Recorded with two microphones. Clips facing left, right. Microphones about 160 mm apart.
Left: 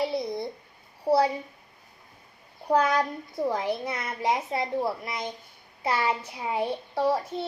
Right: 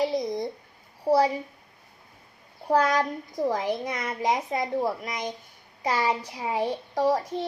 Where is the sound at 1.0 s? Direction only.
15° right (ahead or behind).